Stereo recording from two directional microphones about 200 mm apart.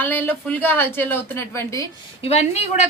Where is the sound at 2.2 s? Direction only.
30° left (ahead or behind).